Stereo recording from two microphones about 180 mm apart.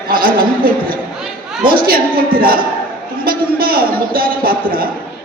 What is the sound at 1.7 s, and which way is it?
A man's voice, 55° right (ahead or behind).